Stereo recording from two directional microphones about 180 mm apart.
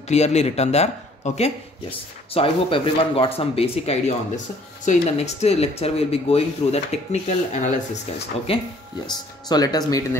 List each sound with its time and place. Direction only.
0.1 s speech: 35° left (ahead or behind); by 10.0 s 20° left (ahead or behind)